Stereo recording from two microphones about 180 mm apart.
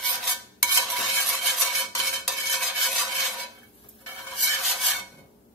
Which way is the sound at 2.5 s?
Centre (ahead or behind).